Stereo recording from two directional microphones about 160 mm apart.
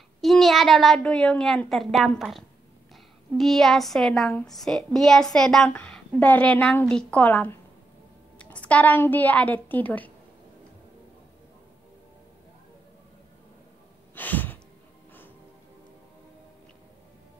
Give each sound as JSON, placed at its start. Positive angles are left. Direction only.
{"t": 0.2, "sound": "a woman's voice", "side_deg": 0}
{"t": 14.1, "sound": "sigh", "side_deg": 10}